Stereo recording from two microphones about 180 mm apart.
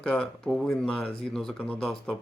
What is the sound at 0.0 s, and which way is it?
Speech, 5° left (ahead or behind).